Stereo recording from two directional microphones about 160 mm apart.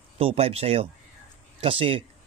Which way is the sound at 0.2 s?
35° right (ahead or behind).